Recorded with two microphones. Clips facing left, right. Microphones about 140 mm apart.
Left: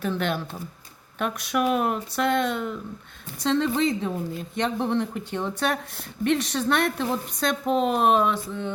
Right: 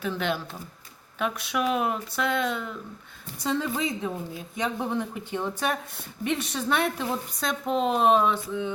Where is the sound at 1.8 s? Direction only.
55° left (ahead or behind).